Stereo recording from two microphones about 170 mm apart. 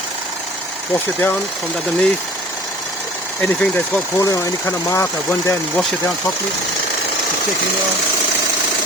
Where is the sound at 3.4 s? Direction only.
10° left (ahead or behind).